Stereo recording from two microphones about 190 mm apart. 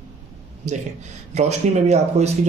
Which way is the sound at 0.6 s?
40° right (ahead or behind).